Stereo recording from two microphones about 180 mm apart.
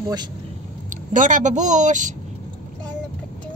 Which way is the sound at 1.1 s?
45° right (ahead or behind).